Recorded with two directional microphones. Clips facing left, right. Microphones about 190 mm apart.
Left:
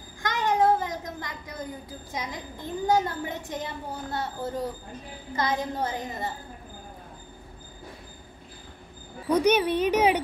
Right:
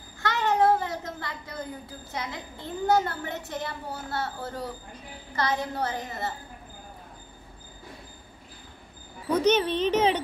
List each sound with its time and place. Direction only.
0.2 s a woman's voice: 15° left (ahead or behind)
9.3 s a woman's voice: 10° left (ahead or behind)